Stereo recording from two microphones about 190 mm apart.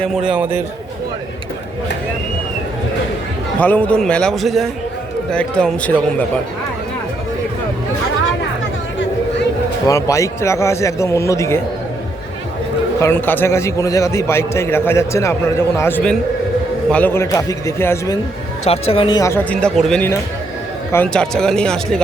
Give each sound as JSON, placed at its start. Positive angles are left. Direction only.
{"t": 0.0, "sound": "a man's voice", "side_deg": -5}
{"t": 3.6, "sound": "a man's voice", "side_deg": 10}
{"t": 9.8, "sound": "a man's voice", "side_deg": 15}
{"t": 13.0, "sound": "a man's voice", "side_deg": 10}
{"t": 18.6, "sound": "speech", "side_deg": 30}
{"t": 19.2, "sound": "a man's voice", "side_deg": 10}